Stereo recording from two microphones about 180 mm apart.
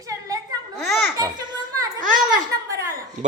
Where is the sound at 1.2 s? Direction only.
20° right (ahead or behind).